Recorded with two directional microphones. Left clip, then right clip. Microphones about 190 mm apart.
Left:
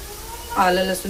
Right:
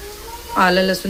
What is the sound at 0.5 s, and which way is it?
Speech, 25° right (ahead or behind).